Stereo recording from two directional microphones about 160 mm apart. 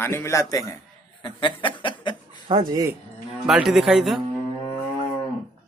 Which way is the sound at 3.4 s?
Centre (ahead or behind).